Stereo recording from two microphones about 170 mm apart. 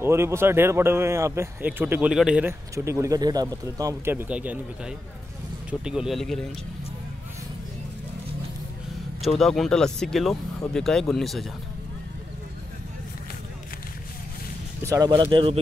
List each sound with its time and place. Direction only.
0.0 s speech: 15° right (ahead or behind)
2.7 s speech: 15° right (ahead or behind); by 6.4 s centre (ahead or behind)
9.4 s speech: 5° left (ahead or behind)
14.8 s speech: 20° right (ahead or behind)
15.3 s speech: 35° right (ahead or behind)